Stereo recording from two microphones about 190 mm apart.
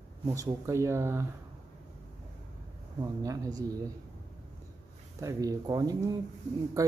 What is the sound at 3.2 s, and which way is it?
Speech, 20° right (ahead or behind).